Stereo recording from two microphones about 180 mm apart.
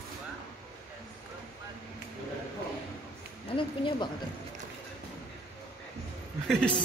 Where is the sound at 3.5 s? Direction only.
30° left (ahead or behind).